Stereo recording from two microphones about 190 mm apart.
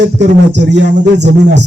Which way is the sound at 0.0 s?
65° right (ahead or behind).